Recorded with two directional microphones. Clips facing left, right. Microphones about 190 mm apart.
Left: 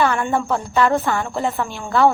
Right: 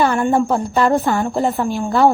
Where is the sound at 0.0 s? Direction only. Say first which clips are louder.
Right 4 dB; 35° right (ahead or behind).